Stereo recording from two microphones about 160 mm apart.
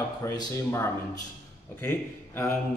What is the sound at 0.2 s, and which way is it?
Speech, 20° left (ahead or behind).